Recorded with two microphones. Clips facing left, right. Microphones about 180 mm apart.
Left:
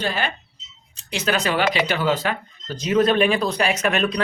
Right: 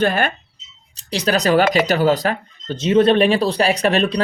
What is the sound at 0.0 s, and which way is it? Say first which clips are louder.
Speech: right 7 dB; 50° right (ahead or behind).